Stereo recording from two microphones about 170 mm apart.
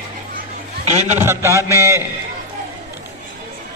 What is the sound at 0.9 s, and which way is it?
Speech, 40° right (ahead or behind).